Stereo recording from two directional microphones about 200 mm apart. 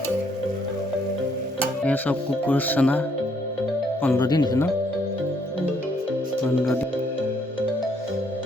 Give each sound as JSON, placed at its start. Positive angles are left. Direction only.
{"t": 1.8, "sound": "speech", "side_deg": 10}
{"t": 4.0, "sound": "speech", "side_deg": 15}